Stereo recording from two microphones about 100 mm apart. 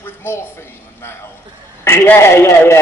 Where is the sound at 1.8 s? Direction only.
25° left (ahead or behind).